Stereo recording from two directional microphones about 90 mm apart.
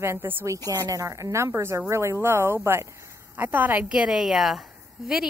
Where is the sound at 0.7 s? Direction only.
40° right (ahead or behind); by 4.0 s 20° right (ahead or behind).